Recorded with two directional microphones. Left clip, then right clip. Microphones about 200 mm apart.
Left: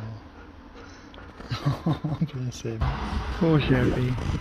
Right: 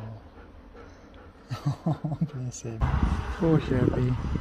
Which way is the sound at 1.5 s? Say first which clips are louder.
Left 4 dB; 15° right (ahead or behind).